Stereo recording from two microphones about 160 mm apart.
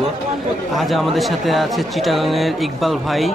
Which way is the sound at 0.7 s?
Centre (ahead or behind).